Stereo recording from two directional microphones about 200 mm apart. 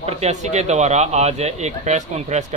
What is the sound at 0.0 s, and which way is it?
A man's voice, 35° right (ahead or behind).